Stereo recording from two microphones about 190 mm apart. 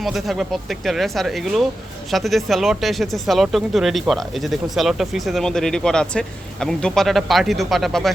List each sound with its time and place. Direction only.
0.0 s speech: centre (ahead or behind)